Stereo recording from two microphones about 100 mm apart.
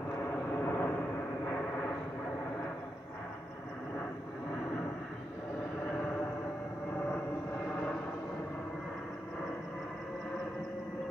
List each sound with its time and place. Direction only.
0.7 s vehicle: 20° left (ahead or behind)
7.6 s vehicle: 10° left (ahead or behind)